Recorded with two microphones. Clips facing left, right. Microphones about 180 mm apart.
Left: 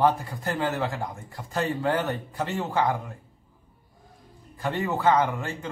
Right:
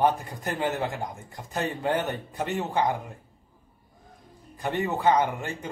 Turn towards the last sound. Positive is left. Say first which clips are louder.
# left 1 dB
turn(degrees=-20)  # may be behind; listen again after turning